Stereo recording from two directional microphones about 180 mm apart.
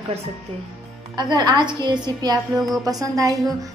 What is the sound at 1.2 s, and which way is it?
Speech, 25° right (ahead or behind).